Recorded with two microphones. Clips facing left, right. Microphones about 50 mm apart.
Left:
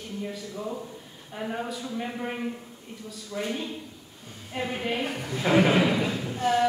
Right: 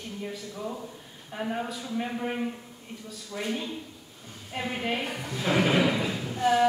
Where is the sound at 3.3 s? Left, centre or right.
Centre.